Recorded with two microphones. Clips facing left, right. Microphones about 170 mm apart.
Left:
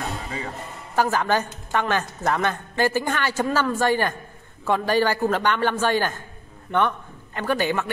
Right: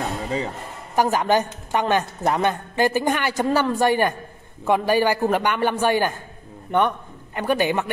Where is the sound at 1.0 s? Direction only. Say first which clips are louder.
Right 2 dB; 15° right (ahead or behind).